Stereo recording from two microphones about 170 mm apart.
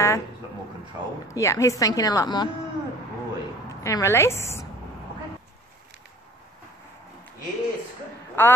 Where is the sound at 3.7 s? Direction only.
20° left (ahead or behind).